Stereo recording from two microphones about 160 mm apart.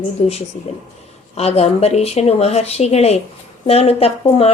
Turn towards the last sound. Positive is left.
turn(degrees=40)  # may be behind; listen again after turning